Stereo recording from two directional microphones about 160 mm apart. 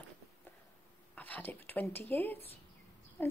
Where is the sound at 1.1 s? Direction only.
10° left (ahead or behind).